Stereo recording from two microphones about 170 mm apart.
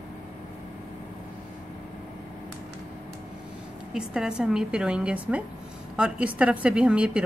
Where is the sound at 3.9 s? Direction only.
5° right (ahead or behind).